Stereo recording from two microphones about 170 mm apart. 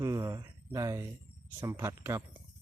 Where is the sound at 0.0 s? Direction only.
20° right (ahead or behind).